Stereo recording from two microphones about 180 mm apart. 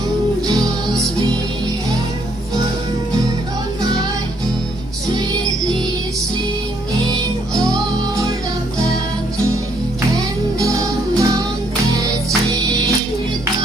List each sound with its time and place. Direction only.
7.5 s music: 5° left (ahead or behind)
10.1 s music: 20° right (ahead or behind)